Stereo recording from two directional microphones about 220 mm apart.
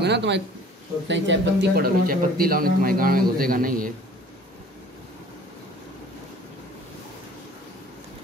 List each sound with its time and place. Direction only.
0.0 s a man's voice: 50° right (ahead or behind)